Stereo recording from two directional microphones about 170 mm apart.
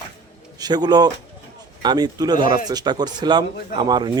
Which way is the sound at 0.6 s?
25° right (ahead or behind).